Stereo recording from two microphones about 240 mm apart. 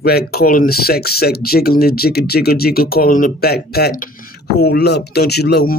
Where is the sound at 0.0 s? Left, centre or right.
Left.